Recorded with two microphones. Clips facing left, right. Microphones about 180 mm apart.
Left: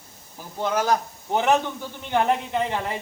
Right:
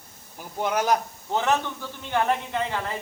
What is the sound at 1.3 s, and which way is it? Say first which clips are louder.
A man's voice: left 3 dB; 15° left (ahead or behind).